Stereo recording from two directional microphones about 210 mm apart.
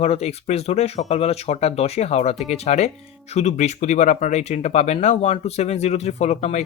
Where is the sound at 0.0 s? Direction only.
30° left (ahead or behind).